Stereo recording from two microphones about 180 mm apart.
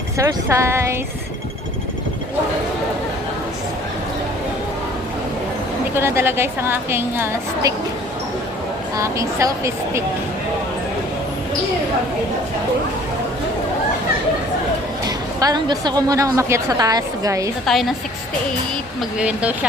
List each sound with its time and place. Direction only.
0.2 s a woman's voice: 15° right (ahead or behind)
5.9 s a woman's voice: 15° right (ahead or behind)
9.0 s a woman's voice: 15° right (ahead or behind)
15.0 s a woman's voice: 20° right (ahead or behind)
17.7 s a woman's voice: centre (ahead or behind)
19.2 s a woman's voice: 5° right (ahead or behind)